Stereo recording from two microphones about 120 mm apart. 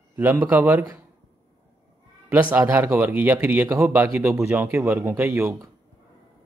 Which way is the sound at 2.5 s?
20° right (ahead or behind).